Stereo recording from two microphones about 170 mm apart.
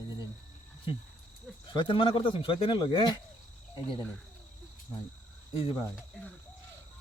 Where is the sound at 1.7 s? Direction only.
30° left (ahead or behind).